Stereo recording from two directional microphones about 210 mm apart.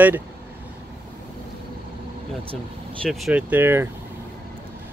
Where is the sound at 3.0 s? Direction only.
Centre (ahead or behind).